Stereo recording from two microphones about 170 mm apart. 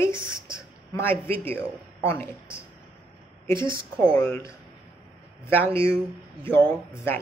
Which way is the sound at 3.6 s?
30° right (ahead or behind).